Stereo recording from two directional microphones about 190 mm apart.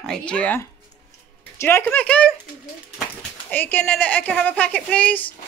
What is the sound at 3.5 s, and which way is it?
A woman's voice, 10° left (ahead or behind).